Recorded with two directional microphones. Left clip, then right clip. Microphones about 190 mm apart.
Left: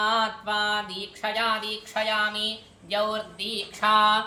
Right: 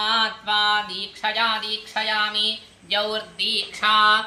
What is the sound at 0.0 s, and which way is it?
Speech, 65° left (ahead or behind).